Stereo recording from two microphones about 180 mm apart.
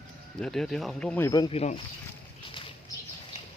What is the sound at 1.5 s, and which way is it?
Speech, 35° left (ahead or behind).